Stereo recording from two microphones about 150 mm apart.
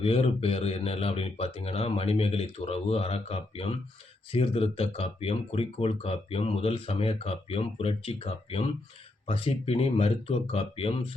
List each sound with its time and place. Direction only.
0.0 s speech: 40° left (ahead or behind)